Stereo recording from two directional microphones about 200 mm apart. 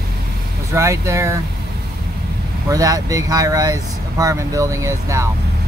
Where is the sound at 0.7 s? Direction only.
15° right (ahead or behind).